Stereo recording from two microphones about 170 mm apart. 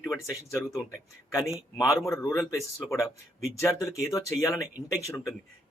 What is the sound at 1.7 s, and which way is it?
Speech, 20° left (ahead or behind).